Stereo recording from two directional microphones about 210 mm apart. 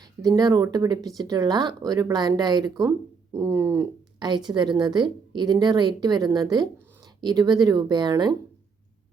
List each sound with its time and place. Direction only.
0.0 s speech: 15° right (ahead or behind)